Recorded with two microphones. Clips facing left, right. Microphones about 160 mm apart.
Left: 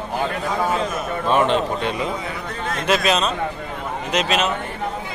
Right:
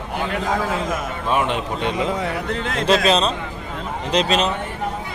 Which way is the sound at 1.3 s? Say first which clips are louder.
Left 3 dB; 10° right (ahead or behind).